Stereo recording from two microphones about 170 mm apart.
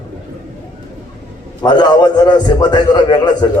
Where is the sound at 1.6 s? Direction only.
25° left (ahead or behind).